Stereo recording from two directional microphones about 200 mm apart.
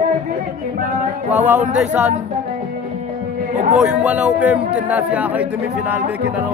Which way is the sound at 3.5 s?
35° right (ahead or behind).